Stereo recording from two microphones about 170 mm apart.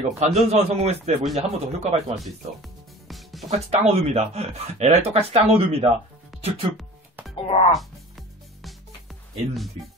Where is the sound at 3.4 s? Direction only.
40° right (ahead or behind).